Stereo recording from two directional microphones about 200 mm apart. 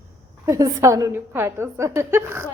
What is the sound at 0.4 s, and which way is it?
A woman's voice, 15° right (ahead or behind).